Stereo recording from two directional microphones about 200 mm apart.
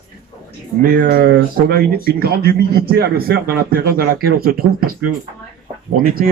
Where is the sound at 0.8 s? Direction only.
45° right (ahead or behind).